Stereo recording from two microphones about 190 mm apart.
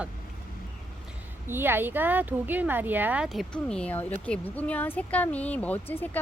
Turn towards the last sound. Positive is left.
turn(degrees=10)  # may be behind; listen again after turning